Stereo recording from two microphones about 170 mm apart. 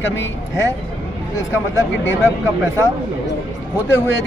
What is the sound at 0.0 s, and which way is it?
Speech, 90° left.